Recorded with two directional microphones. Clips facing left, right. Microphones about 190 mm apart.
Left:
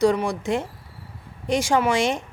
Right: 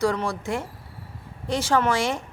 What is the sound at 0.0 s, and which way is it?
Speech, 15° left (ahead or behind).